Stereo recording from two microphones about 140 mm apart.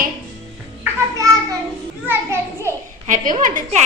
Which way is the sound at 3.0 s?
70° right (ahead or behind).